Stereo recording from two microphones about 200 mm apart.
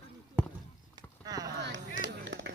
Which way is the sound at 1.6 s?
65° right (ahead or behind).